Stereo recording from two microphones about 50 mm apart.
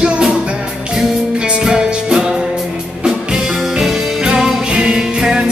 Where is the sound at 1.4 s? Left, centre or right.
Centre.